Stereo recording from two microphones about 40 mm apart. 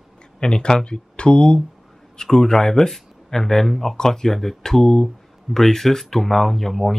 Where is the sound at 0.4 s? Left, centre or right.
Left.